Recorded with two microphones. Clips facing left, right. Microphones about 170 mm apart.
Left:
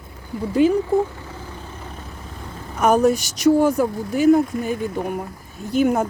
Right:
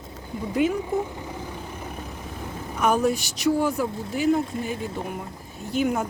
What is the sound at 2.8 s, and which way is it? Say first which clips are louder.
Speech: left 5 dB; 45° left (ahead or behind).